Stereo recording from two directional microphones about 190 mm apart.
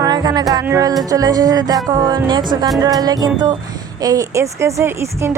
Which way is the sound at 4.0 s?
20° right (ahead or behind).